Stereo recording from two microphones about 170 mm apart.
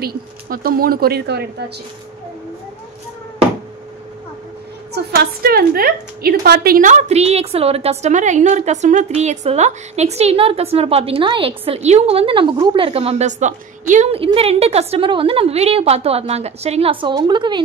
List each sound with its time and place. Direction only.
0.0 s speech: 60° right (ahead or behind)
4.9 s a woman's voice: 70° right (ahead or behind); by 14.2 s 45° right (ahead or behind)
14.2 s a woman's voice: 35° right (ahead or behind)